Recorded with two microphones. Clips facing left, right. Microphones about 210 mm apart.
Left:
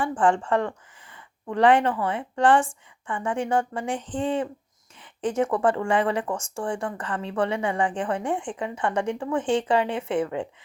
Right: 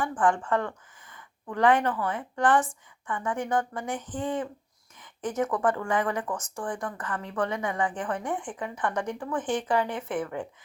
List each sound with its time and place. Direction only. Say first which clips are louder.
0.0 s a woman's voice: left 3 dB; 30° left (ahead or behind)